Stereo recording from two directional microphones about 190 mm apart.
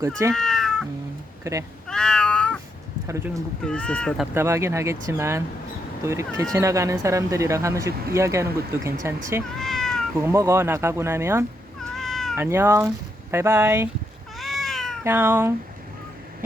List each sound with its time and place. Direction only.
0.3 s cat: 5° left (ahead or behind)
1.5 s speech: 15° right (ahead or behind)
1.9 s cat: 5° left (ahead or behind)
3.1 s speech: 15° right (ahead or behind)
3.6 s speech: 5° left (ahead or behind)
4.4 s speech: 15° right (ahead or behind)
9.6 s cat: centre (ahead or behind)
10.2 s speech: 15° right (ahead or behind)
11.9 s cat: centre (ahead or behind)
12.4 s speech: 10° right (ahead or behind)
14.3 s cat: centre (ahead or behind)
15.0 s speech: 10° right (ahead or behind)